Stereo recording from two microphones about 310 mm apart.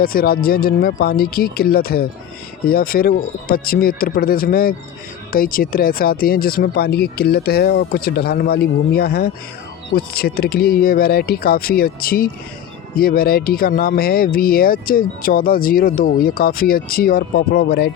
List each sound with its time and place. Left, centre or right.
0.0 s speech: left